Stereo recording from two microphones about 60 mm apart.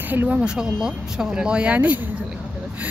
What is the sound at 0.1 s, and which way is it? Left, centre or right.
Speech, right.